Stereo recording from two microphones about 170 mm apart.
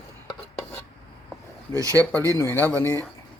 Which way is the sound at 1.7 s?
20° right (ahead or behind).